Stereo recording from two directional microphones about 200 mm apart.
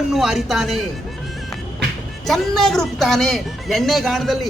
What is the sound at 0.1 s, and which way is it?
Speech, centre (ahead or behind).